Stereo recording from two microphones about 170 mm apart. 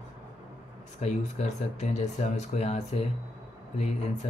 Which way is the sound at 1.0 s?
40° left (ahead or behind).